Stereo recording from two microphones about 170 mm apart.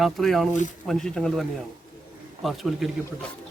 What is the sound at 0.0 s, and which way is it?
A man's voice, centre (ahead or behind).